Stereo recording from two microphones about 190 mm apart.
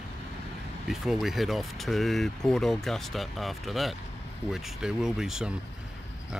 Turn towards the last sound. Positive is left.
turn(degrees=-5)  # may be behind; listen again after turning